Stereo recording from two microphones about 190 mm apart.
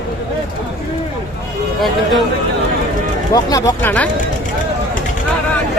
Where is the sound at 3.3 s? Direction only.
20° left (ahead or behind).